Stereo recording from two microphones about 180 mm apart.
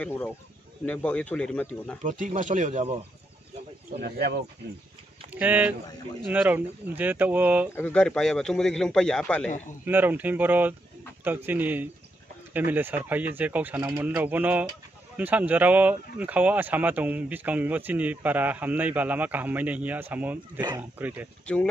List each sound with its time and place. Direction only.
0.0 s speech: 5° left (ahead or behind)
2.0 s speech: 45° right (ahead or behind)
4.0 s speech: 65° right (ahead or behind)
5.3 s speech: 10° right (ahead or behind)
7.7 s a man's voice: 5° left (ahead or behind)
9.8 s speech: 10° right (ahead or behind)